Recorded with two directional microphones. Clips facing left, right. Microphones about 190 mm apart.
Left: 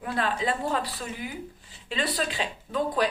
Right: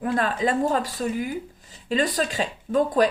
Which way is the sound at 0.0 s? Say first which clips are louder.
Right 5 dB; 45° right (ahead or behind).